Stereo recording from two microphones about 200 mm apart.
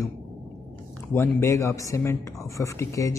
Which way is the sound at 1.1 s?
10° left (ahead or behind).